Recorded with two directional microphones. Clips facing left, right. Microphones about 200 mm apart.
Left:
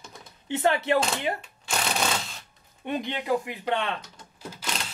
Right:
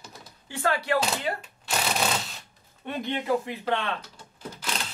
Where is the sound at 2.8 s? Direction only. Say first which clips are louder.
Even; 15° left (ahead or behind).